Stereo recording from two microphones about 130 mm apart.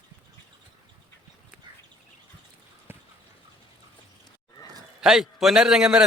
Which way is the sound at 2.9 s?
15° right (ahead or behind).